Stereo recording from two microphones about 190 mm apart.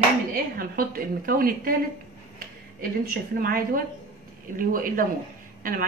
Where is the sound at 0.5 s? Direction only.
50° right (ahead or behind).